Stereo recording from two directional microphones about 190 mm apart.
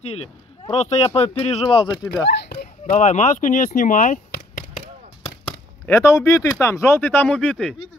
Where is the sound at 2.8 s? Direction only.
40° left (ahead or behind).